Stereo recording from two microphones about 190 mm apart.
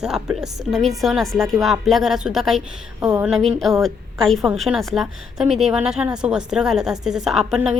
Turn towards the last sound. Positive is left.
turn(degrees=0)  # may be behind; listen again after turning